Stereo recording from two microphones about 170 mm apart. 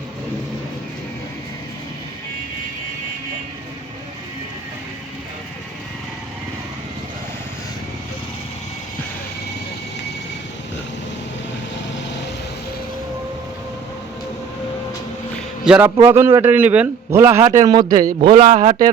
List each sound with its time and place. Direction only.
15.6 s a man's voice: 5° right (ahead or behind)
17.4 s a man's voice: 45° right (ahead or behind)
18.2 s a man's voice: 30° right (ahead or behind)